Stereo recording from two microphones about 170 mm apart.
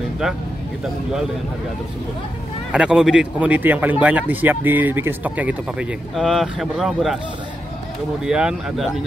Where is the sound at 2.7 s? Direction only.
5° right (ahead or behind).